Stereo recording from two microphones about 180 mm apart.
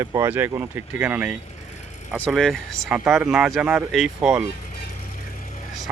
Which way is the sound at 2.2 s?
Centre (ahead or behind).